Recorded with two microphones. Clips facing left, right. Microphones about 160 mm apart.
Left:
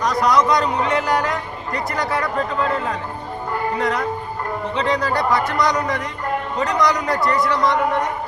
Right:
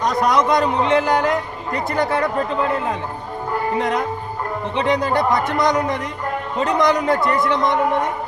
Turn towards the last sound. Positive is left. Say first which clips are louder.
# even
turn(degrees=-25)  # may be behind; listen again after turning